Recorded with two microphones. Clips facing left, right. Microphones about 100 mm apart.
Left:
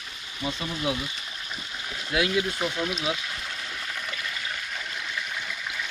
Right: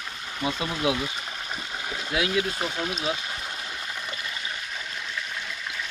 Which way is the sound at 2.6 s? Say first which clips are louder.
Left 1 dB; 35° right (ahead or behind).